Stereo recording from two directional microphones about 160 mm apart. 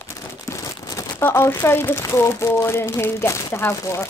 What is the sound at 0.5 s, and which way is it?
Speech, 20° left (ahead or behind).